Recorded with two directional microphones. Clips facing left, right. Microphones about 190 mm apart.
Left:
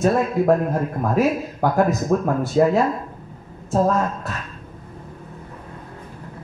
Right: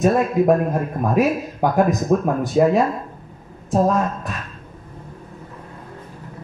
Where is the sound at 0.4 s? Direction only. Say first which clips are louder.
Right 1 dB; 20° right (ahead or behind).